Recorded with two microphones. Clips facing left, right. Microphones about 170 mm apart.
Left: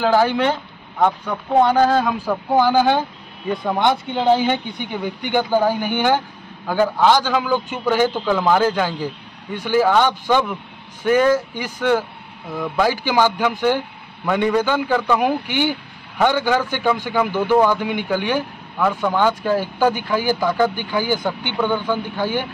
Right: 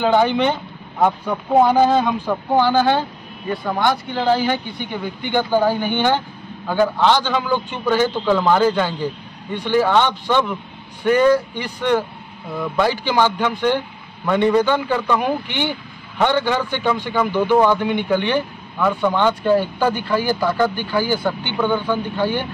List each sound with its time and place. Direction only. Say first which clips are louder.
0.0 s a man's voice: right 1 dB; 5° left (ahead or behind)